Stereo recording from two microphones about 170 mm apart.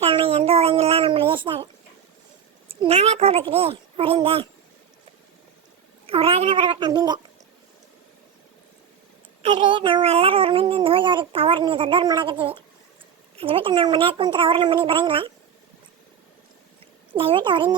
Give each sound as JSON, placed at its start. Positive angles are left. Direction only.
{"t": 0.0, "sound": "a sound", "side_deg": -35}
{"t": 2.6, "sound": "speech", "side_deg": -35}
{"t": 6.1, "sound": "a child's voice", "side_deg": -35}
{"t": 9.4, "sound": "a child's voice", "side_deg": -30}
{"t": 17.2, "sound": "a child's voice", "side_deg": -30}